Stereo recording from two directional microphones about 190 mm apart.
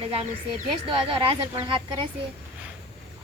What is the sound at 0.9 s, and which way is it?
A woman's voice, 25° right (ahead or behind).